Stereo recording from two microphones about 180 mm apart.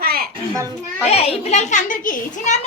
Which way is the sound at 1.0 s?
35° left (ahead or behind).